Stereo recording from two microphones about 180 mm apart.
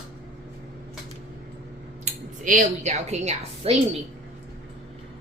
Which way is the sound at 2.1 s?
45° right (ahead or behind).